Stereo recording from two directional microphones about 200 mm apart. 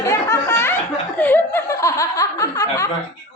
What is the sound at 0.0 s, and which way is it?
Laughter, 15° left (ahead or behind).